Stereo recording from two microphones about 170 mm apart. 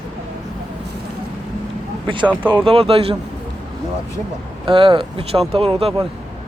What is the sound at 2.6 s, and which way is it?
Speech, 35° right (ahead or behind).